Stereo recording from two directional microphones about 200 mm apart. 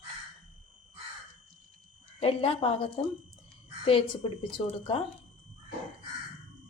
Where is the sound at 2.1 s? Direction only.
30° left (ahead or behind).